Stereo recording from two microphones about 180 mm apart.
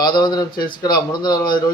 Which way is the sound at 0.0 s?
25° left (ahead or behind).